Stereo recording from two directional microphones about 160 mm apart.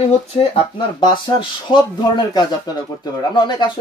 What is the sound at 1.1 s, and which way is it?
Speech, 30° left (ahead or behind).